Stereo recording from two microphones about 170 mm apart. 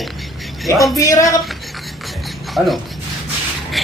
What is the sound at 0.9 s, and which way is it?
Speech, 20° left (ahead or behind).